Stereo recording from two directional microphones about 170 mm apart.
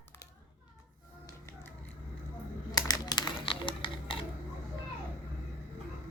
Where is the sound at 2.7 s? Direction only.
20° left (ahead or behind).